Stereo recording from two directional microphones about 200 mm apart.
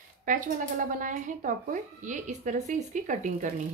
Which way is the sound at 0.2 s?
40° right (ahead or behind).